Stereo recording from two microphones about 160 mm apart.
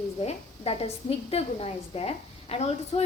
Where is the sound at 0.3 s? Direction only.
40° left (ahead or behind).